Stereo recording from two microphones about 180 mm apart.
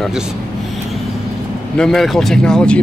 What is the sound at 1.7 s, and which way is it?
Speech, centre (ahead or behind).